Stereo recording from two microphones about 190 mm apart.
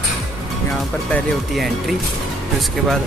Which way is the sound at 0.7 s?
Centre (ahead or behind).